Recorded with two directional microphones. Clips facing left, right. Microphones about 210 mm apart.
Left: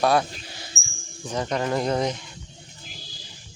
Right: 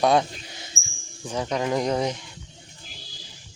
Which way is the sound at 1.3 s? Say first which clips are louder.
Even; 10° right (ahead or behind).